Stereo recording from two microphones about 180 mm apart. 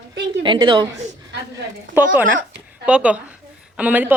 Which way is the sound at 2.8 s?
5° right (ahead or behind).